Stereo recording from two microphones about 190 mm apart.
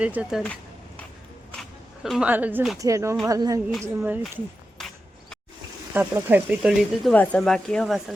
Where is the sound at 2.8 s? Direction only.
15° right (ahead or behind).